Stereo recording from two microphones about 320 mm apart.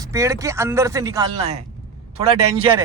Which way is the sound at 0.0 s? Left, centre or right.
Centre.